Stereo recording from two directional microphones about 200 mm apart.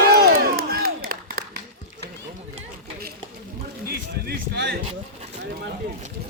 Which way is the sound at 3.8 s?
50° right (ahead or behind).